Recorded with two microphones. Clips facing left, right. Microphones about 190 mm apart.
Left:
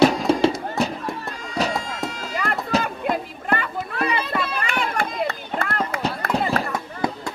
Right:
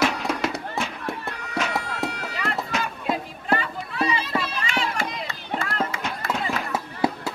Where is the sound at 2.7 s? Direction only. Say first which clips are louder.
Left 8 dB; 35° left (ahead or behind).